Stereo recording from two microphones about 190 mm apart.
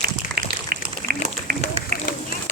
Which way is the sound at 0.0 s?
55° right (ahead or behind).